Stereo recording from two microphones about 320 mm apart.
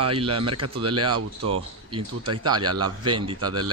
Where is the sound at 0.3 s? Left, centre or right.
Right.